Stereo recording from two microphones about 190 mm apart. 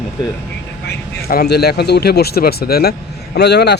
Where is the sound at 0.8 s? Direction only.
55° left (ahead or behind).